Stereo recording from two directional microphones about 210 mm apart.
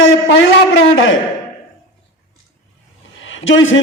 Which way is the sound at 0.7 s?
65° left (ahead or behind).